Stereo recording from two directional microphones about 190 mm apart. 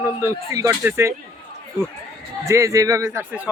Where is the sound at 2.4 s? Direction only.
15° right (ahead or behind).